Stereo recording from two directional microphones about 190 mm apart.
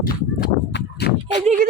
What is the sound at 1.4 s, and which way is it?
Speech, 40° right (ahead or behind).